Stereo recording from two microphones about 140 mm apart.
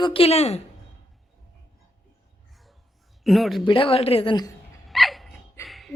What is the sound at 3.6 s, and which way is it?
Speech, 40° left (ahead or behind).